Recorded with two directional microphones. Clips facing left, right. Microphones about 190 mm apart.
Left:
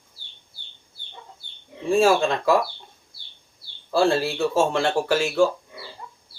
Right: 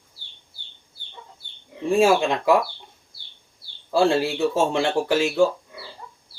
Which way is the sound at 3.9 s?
15° right (ahead or behind).